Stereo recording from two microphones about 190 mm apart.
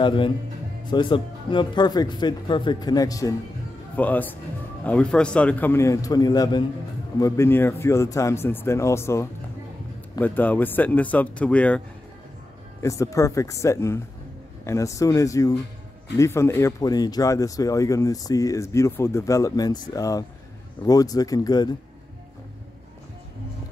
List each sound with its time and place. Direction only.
0.0 s speech: 25° left (ahead or behind); by 11.8 s 5° left (ahead or behind)
12.8 s speech: 15° left (ahead or behind)